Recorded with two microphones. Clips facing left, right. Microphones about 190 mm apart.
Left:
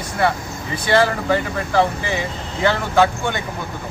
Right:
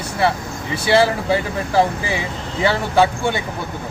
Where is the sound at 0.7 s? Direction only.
10° right (ahead or behind).